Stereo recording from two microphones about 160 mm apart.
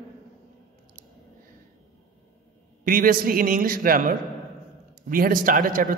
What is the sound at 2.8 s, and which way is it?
A man's voice, 60° right (ahead or behind).